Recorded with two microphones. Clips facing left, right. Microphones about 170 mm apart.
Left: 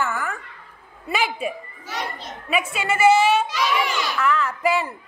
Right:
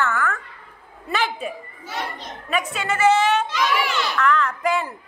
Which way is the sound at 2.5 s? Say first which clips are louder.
Left 1 dB; 10° left (ahead or behind).